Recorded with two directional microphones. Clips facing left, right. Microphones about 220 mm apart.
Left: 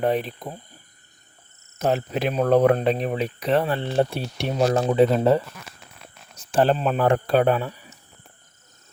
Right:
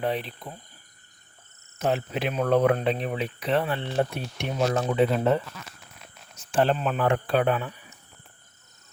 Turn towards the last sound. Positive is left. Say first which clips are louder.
# left 4 dB
turn(degrees=35)  # may be behind; listen again after turning